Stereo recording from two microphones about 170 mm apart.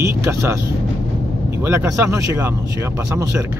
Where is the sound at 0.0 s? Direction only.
15° right (ahead or behind).